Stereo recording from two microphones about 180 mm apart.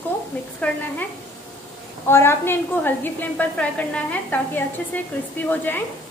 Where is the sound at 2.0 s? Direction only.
15° left (ahead or behind).